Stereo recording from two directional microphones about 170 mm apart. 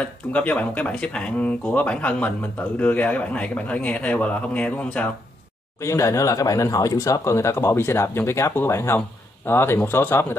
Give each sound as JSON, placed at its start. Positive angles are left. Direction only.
{"t": 0.0, "sound": "speech", "side_deg": 10}